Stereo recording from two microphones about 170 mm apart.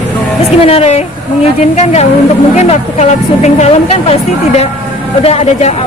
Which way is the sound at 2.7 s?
40° left (ahead or behind).